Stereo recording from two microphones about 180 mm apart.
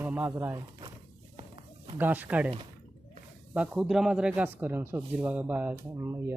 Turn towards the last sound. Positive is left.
turn(degrees=-15)  # may be behind; listen again after turning